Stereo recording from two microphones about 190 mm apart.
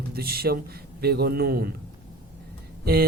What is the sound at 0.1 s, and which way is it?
Speech, 55° right (ahead or behind).